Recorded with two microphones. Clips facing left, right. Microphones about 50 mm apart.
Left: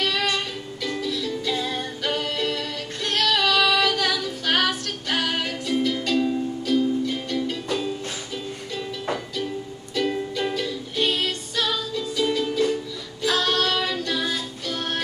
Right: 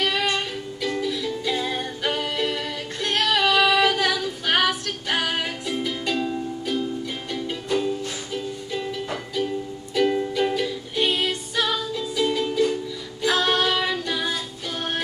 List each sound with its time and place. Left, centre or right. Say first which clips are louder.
0.0 s music: right 1 dB; centre